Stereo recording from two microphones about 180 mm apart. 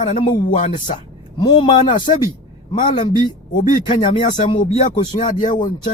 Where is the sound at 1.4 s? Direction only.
25° left (ahead or behind).